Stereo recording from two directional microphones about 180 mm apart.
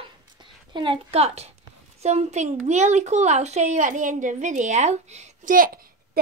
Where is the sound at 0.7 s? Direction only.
30° right (ahead or behind).